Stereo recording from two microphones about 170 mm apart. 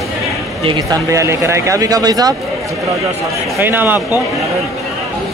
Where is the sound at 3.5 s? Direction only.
10° right (ahead or behind).